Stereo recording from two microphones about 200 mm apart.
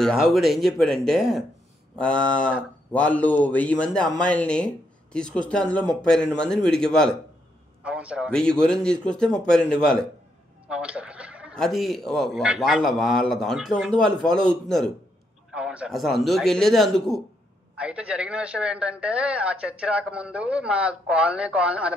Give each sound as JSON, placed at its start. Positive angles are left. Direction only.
{"t": 0.0, "sound": "a man's voice", "side_deg": 0}